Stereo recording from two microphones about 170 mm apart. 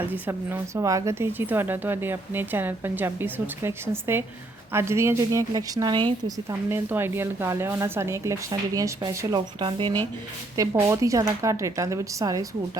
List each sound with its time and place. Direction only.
0.3 s a woman's voice: 15° right (ahead or behind)
10.6 s speech: 15° right (ahead or behind)